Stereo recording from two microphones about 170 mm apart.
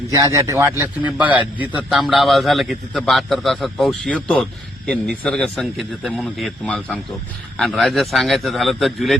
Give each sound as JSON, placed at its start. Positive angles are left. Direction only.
{"t": 0.1, "sound": "a man's voice", "side_deg": -20}